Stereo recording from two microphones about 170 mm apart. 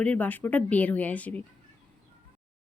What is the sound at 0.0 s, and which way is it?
Speech, 10° left (ahead or behind).